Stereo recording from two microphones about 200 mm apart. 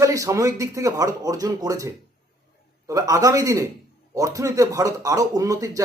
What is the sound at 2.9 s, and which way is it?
Speech, 15° right (ahead or behind).